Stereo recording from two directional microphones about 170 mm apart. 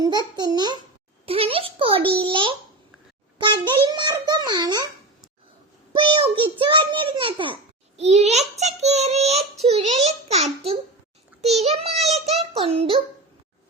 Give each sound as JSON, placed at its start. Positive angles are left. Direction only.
{"t": 0.0, "sound": "a child's voice", "side_deg": -25}
{"t": 6.1, "sound": "a child's voice", "side_deg": -30}